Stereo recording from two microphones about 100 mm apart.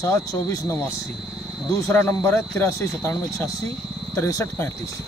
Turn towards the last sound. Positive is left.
turn(degrees=25)  # may be behind; listen again after turning